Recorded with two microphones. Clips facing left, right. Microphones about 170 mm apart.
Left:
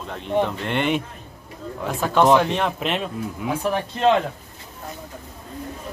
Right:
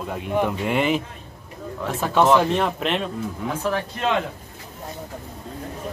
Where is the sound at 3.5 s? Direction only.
15° left (ahead or behind).